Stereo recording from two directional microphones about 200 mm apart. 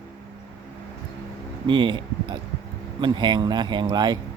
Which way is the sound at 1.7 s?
25° right (ahead or behind).